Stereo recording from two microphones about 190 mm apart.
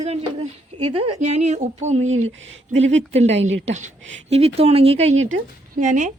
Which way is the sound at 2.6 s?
35° right (ahead or behind).